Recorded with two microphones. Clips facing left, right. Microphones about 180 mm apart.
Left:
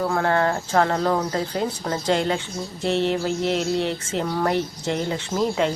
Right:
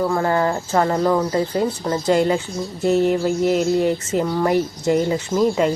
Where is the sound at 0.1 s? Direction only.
5° right (ahead or behind).